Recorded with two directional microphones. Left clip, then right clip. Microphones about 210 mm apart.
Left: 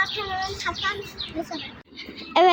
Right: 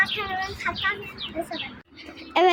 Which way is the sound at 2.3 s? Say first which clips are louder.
Left 2 dB; centre (ahead or behind).